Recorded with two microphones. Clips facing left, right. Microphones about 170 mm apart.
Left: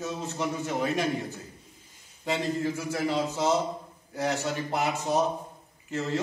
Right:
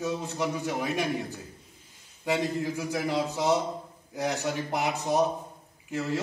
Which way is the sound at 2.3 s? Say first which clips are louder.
Even; 15° right (ahead or behind).